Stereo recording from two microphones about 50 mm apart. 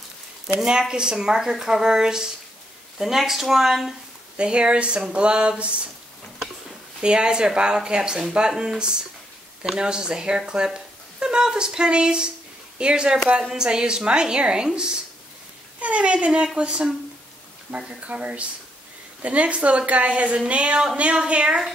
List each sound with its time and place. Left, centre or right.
0.6 s speech: centre
4.4 s speech: right
7.0 s speech: centre
15.8 s speech: right